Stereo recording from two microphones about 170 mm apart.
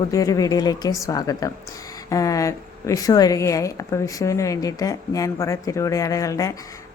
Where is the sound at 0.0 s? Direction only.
20° left (ahead or behind).